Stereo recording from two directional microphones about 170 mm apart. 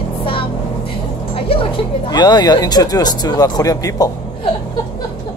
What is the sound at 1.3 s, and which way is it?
Speech, 30° left (ahead or behind).